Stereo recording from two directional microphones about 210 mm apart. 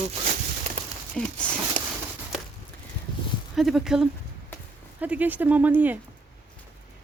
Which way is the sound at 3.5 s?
Centre (ahead or behind).